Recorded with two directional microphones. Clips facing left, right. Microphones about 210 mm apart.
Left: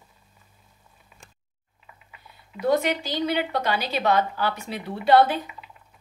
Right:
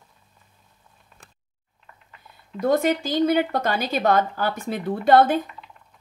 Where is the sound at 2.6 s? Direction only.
50° right (ahead or behind).